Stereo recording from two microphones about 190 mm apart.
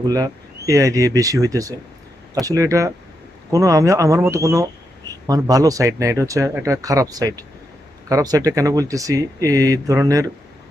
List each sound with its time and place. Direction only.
0.1 s speech: 20° right (ahead or behind)